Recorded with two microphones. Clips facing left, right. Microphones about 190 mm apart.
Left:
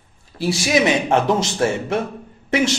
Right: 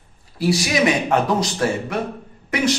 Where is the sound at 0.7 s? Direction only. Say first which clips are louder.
Left 4 dB; 25° left (ahead or behind).